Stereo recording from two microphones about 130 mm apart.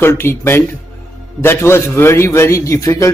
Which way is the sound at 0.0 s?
20° left (ahead or behind).